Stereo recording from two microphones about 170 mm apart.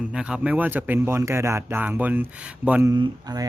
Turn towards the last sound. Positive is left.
turn(degrees=-20)  # may be behind; listen again after turning